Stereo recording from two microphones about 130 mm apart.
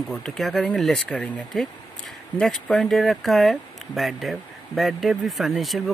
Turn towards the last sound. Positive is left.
turn(degrees=0)  # may be behind; listen again after turning